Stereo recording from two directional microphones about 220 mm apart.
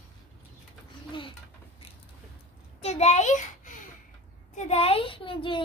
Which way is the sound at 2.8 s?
30° left (ahead or behind).